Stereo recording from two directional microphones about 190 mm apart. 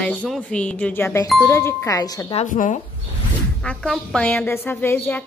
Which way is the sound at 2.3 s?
45° left (ahead or behind).